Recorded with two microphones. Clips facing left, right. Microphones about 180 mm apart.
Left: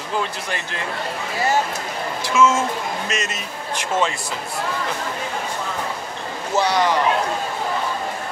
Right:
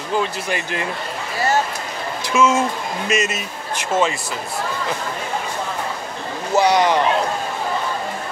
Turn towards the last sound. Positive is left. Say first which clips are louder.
# right 4 dB
turn(degrees=-15)  # may be behind; listen again after turning